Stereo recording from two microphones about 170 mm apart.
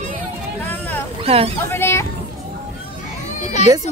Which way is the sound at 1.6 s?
15° left (ahead or behind).